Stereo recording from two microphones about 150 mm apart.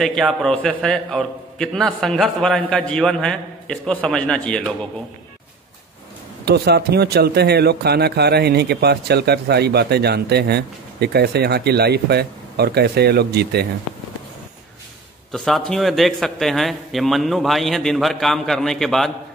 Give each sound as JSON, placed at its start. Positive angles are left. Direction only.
{"t": 0.0, "sound": "a man's voice", "side_deg": 5}
{"t": 6.4, "sound": "speech", "side_deg": -90}
{"t": 15.3, "sound": "a man's voice", "side_deg": 5}